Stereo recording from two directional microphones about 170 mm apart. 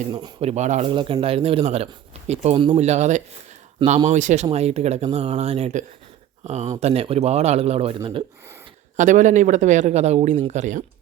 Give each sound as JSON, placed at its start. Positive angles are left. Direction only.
{"t": 0.1, "sound": "speech", "side_deg": -30}
{"t": 0.9, "sound": "speech", "side_deg": -30}
{"t": 9.0, "sound": "speech", "side_deg": -50}